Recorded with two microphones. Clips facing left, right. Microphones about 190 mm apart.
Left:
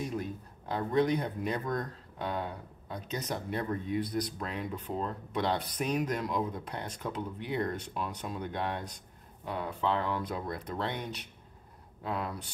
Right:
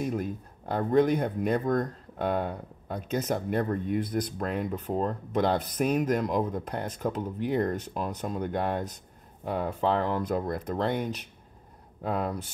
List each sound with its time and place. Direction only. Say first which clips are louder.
0.0 s speech: right 5 dB; 50° right (ahead or behind)